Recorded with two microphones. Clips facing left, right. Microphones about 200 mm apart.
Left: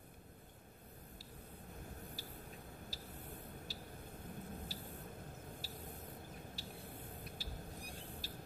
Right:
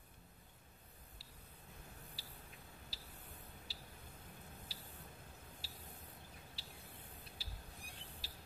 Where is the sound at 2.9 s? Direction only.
45° left (ahead or behind).